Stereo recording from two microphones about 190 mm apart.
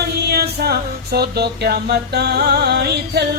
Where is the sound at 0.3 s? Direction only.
55° right (ahead or behind).